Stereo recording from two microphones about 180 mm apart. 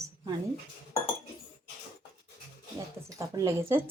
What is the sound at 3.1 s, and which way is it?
Stir, 20° right (ahead or behind).